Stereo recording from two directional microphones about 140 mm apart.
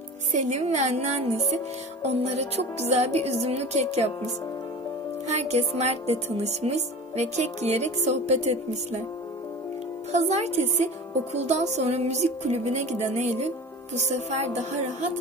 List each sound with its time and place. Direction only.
0.3 s a woman's voice: 55° right (ahead or behind)
2.0 s music: 50° right (ahead or behind)
5.3 s music: 50° right (ahead or behind)
10.1 s a woman's voice: 55° right (ahead or behind)
11.3 s music: 55° right (ahead or behind)